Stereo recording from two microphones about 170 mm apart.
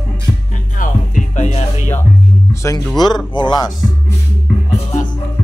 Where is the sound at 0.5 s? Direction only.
50° left (ahead or behind).